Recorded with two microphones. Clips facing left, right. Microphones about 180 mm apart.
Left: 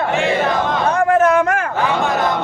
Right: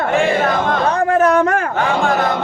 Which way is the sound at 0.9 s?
35° right (ahead or behind).